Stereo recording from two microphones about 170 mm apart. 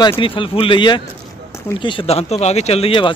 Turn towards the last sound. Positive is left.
turn(degrees=30)  # may be behind; listen again after turning